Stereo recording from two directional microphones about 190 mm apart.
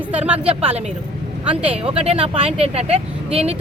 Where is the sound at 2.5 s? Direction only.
30° right (ahead or behind).